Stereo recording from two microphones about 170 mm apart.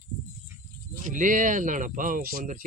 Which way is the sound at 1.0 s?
50° right (ahead or behind).